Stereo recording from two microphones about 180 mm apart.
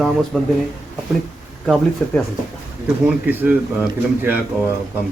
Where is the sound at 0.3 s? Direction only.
5° left (ahead or behind).